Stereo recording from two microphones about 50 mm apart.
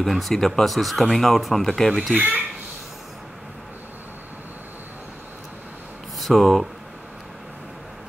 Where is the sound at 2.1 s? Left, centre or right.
Right.